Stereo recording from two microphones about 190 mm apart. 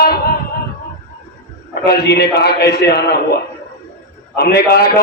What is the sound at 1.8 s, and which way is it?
A man's voice, 60° left (ahead or behind).